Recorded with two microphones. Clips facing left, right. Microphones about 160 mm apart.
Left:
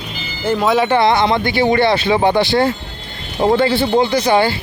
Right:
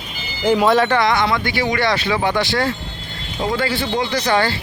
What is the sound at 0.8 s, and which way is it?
Speech, 25° left (ahead or behind).